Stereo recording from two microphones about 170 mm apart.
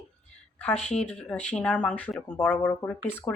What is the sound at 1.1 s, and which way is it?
Speech, 10° left (ahead or behind).